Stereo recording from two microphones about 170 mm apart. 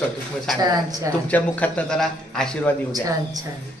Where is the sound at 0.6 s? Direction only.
20° right (ahead or behind).